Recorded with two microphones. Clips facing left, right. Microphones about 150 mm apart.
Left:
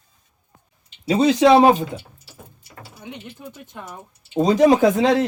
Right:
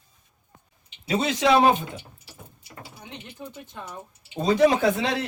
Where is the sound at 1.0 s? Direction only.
30° left (ahead or behind).